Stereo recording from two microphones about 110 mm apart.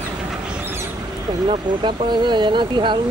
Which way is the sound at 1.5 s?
45° right (ahead or behind).